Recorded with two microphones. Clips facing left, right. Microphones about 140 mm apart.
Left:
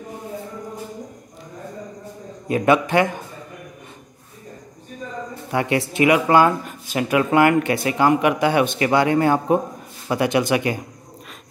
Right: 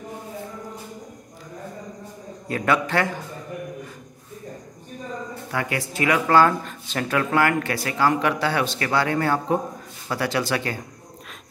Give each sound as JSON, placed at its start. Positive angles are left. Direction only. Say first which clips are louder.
{"t": 2.4, "sound": "a man's voice", "louder": "left 5 dB", "side_deg": 20}
{"t": 5.5, "sound": "speech", "louder": "left 6 dB", "side_deg": 25}